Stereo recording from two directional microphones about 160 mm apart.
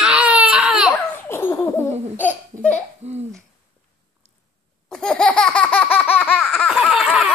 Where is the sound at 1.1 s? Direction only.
15° left (ahead or behind).